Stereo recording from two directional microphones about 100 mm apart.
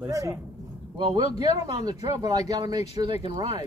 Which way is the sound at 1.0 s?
55° right (ahead or behind).